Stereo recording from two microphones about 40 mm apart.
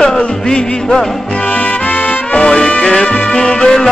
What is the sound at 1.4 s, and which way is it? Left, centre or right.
Music, left.